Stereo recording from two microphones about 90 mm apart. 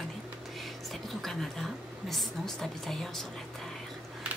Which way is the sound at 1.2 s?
Centre (ahead or behind).